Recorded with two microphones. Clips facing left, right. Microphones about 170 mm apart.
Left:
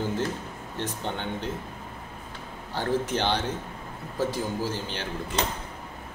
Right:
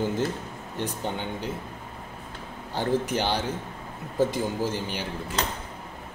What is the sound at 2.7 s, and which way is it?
Speech, 15° right (ahead or behind).